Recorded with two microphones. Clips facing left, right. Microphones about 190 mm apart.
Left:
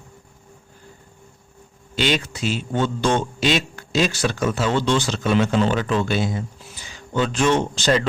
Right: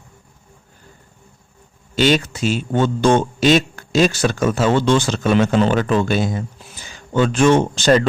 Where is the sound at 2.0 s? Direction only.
45° right (ahead or behind).